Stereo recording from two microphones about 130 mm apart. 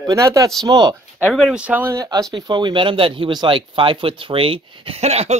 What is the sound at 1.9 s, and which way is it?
Speech, 30° right (ahead or behind).